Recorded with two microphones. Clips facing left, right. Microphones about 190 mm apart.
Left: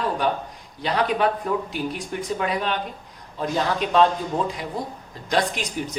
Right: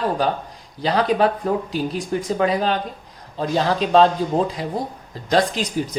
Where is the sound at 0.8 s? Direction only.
35° right (ahead or behind).